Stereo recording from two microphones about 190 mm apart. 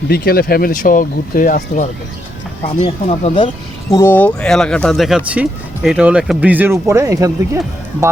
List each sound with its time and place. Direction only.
0.1 s speech: 55° left (ahead or behind); by 3.5 s 35° left (ahead or behind)
3.9 s speech: 10° left (ahead or behind); by 7.6 s 15° right (ahead or behind)